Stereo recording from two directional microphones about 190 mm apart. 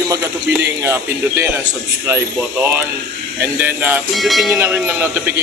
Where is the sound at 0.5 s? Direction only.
15° right (ahead or behind).